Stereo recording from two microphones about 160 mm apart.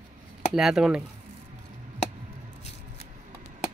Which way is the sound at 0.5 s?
5° right (ahead or behind).